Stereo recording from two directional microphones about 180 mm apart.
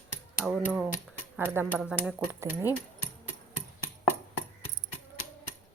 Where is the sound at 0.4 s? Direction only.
5° right (ahead or behind).